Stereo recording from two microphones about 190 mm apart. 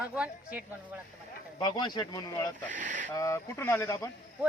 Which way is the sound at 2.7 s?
40° right (ahead or behind).